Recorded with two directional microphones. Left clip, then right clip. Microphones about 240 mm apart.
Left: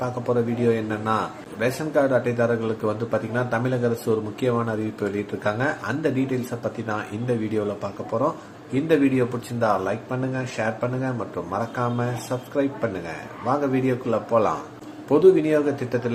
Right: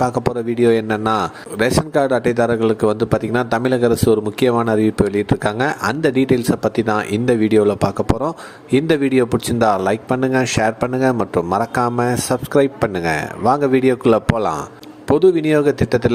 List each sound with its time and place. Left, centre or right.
0.0 s a man's voice: right